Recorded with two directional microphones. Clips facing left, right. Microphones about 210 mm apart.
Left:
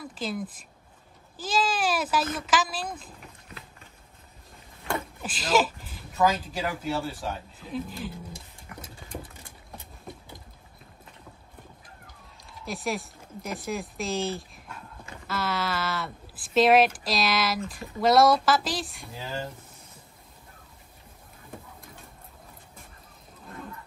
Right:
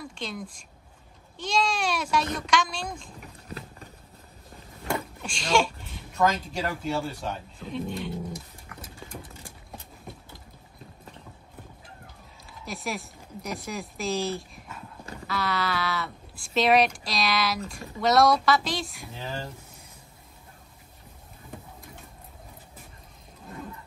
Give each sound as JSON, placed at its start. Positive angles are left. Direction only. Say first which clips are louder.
{"t": 0.0, "sound": "speech", "louder": "left 3 dB", "side_deg": 5}
{"t": 3.4, "sound": "a sound", "louder": "right 7 dB", "side_deg": -35}
{"t": 5.2, "sound": "speech", "louder": "left 1 dB", "side_deg": 5}
{"t": 12.4, "sound": "speech", "louder": "left 3 dB", "side_deg": 0}